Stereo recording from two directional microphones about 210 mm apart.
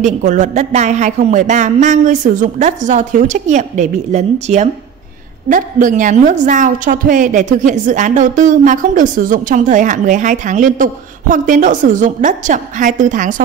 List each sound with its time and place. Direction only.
0.0 s a woman's voice: 35° right (ahead or behind)